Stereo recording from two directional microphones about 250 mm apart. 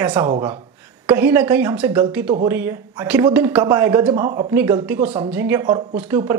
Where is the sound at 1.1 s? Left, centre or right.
Centre.